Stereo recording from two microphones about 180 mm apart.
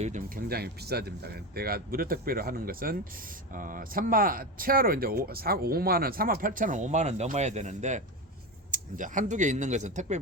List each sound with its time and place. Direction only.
0.0 s speech: 45° right (ahead or behind)